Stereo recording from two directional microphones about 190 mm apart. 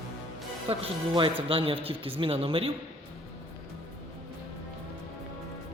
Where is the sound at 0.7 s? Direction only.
30° right (ahead or behind).